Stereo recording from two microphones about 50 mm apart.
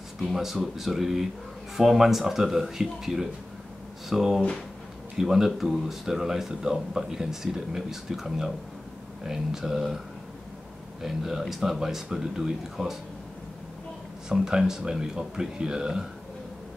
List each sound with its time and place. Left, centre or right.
0.2 s speech: centre
4.4 s speech: centre
5.1 s speech: centre
11.0 s speech: centre
14.3 s speech: centre